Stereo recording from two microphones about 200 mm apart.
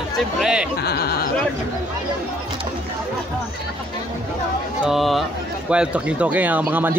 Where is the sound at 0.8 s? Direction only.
50° left (ahead or behind).